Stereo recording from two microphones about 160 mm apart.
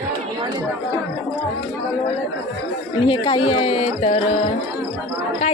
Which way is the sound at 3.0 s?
35° left (ahead or behind).